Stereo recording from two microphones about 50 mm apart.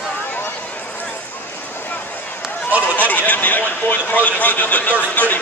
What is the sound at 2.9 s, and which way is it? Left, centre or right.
Speech, left.